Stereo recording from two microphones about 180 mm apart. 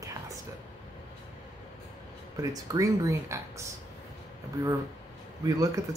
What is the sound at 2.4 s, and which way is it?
Speech, 20° right (ahead or behind).